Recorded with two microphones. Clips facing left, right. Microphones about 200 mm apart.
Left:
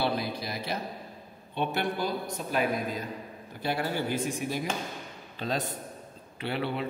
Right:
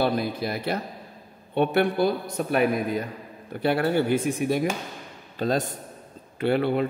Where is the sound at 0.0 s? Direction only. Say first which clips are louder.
Right 6 dB; 50° right (ahead or behind).